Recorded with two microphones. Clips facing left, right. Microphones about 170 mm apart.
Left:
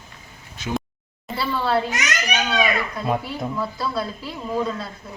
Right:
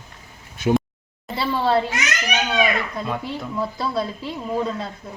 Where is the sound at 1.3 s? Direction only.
20° right (ahead or behind).